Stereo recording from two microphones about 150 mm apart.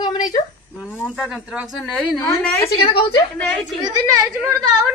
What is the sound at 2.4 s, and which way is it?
Speech, 15° left (ahead or behind).